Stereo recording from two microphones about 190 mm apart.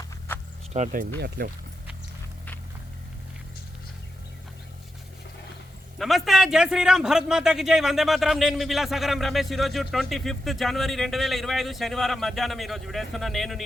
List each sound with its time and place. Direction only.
0.7 s speech: 40° right (ahead or behind)
6.0 s a man's voice: centre (ahead or behind)